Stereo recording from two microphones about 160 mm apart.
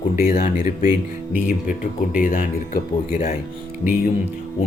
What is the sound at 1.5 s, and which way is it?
Speech, 55° left (ahead or behind).